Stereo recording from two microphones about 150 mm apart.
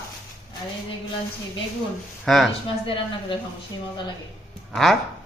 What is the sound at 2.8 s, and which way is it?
Speech, 35° left (ahead or behind).